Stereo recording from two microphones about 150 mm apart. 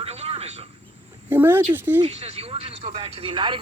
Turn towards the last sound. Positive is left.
turn(degrees=-35)  # may be behind; listen again after turning